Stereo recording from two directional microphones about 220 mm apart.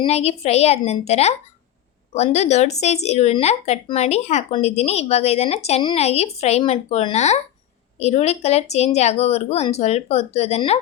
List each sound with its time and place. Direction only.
0.0 s speech: 30° left (ahead or behind)